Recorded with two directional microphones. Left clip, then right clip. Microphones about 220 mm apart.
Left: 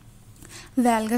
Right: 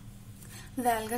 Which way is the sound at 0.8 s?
45° left (ahead or behind).